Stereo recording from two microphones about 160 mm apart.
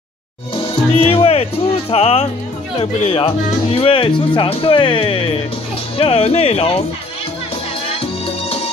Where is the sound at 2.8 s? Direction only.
35° left (ahead or behind).